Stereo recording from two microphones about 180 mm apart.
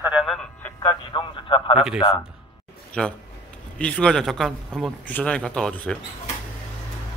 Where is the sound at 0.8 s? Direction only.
25° left (ahead or behind).